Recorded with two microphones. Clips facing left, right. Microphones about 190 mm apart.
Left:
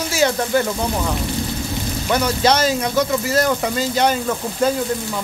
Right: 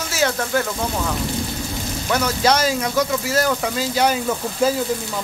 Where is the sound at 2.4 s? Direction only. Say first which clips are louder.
Even; 5° right (ahead or behind).